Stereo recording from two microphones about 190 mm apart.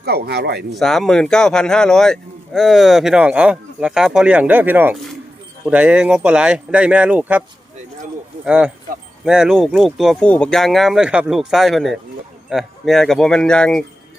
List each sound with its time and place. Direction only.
0.0 s speech: 55° right (ahead or behind)
0.7 s speech: centre (ahead or behind)
8.4 s speech: 5° right (ahead or behind)